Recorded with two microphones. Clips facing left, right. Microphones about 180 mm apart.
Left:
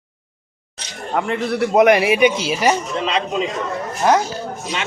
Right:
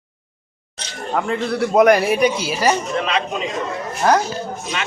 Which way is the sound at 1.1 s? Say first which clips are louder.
Even; 5° left (ahead or behind).